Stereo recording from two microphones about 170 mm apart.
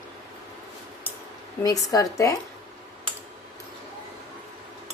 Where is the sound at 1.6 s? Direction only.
20° left (ahead or behind).